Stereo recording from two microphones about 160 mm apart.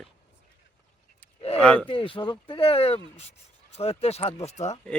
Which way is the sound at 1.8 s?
35° left (ahead or behind).